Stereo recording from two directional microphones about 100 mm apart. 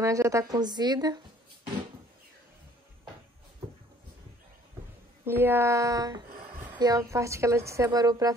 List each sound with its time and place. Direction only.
0.0 s a woman's voice: 30° right (ahead or behind)
5.2 s a woman's voice: 20° right (ahead or behind); by 8.4 s 40° right (ahead or behind)